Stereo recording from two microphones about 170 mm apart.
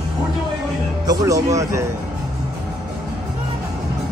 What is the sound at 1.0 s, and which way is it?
Speech, 20° right (ahead or behind).